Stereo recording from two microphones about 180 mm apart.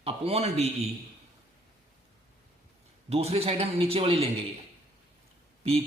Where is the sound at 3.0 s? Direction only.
35° right (ahead or behind).